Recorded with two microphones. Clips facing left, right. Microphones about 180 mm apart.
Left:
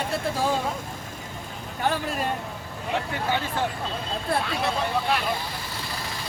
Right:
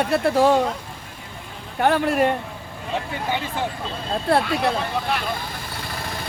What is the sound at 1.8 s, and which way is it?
Speech, 65° right (ahead or behind).